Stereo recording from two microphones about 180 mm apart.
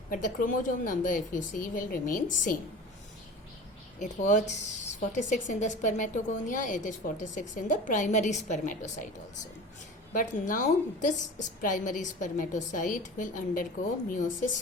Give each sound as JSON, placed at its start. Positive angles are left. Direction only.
{"t": 0.1, "sound": "speech", "side_deg": 50}
{"t": 4.0, "sound": "speech", "side_deg": 45}
{"t": 10.1, "sound": "speech", "side_deg": 50}